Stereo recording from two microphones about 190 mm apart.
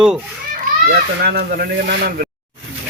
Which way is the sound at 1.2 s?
55° right (ahead or behind).